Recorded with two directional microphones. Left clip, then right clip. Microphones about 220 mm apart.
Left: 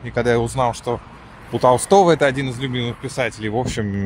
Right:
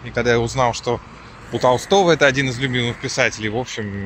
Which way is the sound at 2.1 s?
5° left (ahead or behind).